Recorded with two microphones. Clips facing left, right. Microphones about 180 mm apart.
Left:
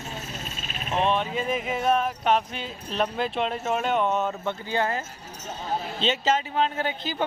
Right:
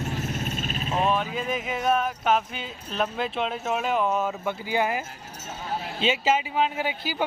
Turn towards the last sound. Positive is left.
turn(degrees=-10)  # may be behind; listen again after turning